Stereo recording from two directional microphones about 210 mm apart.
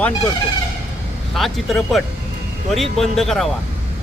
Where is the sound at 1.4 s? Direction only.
Centre (ahead or behind).